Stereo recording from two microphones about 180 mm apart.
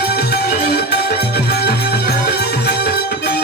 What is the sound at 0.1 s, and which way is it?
Music, 65° left (ahead or behind).